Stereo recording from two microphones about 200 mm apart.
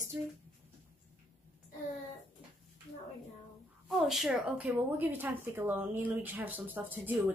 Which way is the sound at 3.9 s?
Centre (ahead or behind).